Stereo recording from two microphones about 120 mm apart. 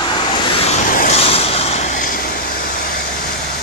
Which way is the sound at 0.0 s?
40° left (ahead or behind).